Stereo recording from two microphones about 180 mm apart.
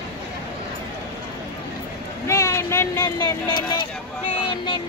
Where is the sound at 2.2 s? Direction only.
15° left (ahead or behind).